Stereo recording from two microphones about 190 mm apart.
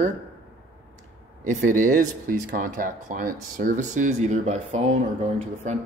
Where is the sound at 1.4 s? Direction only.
45° right (ahead or behind).